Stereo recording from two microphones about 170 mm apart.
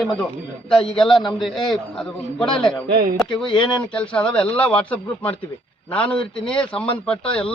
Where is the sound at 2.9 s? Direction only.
60° right (ahead or behind).